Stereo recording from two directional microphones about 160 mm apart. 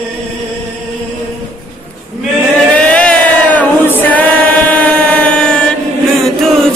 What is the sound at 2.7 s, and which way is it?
Choir, 10° left (ahead or behind).